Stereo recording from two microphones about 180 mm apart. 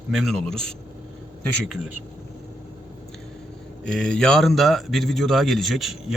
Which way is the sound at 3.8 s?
5° left (ahead or behind).